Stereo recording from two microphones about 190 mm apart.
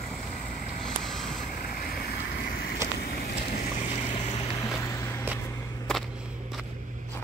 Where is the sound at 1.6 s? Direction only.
50° left (ahead or behind).